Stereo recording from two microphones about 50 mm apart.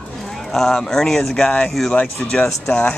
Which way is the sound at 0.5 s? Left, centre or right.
Centre.